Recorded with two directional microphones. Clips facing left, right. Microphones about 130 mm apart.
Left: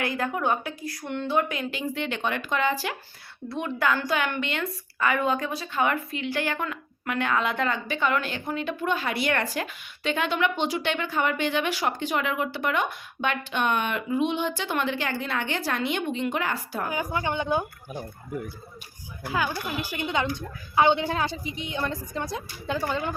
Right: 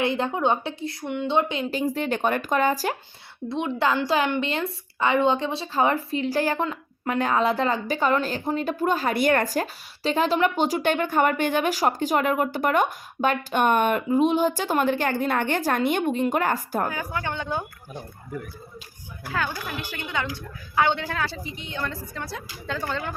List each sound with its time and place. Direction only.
0.0 s a woman's voice: 25° right (ahead or behind)
1.7 s a woman's voice: 40° right (ahead or behind)
3.5 s a woman's voice: 25° right (ahead or behind); by 16.9 s 45° right (ahead or behind)
16.9 s a woman's voice: 15° left (ahead or behind)
19.3 s a woman's voice: 10° left (ahead or behind)